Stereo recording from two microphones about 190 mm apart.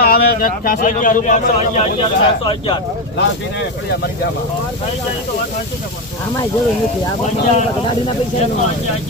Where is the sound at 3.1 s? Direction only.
65° left (ahead or behind).